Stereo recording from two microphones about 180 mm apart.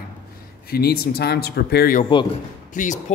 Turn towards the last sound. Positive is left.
turn(degrees=40)  # may be behind; listen again after turning